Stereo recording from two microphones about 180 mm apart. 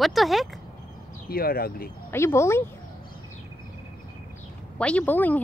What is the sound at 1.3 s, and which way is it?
Speech, 55° left (ahead or behind).